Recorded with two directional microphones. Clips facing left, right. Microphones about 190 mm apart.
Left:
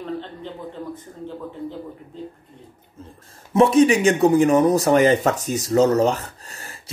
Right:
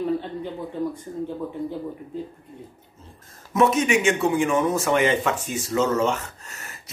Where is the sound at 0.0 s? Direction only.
10° right (ahead or behind).